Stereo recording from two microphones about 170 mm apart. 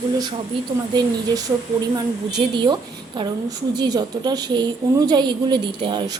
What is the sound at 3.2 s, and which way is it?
A woman's voice, 25° right (ahead or behind).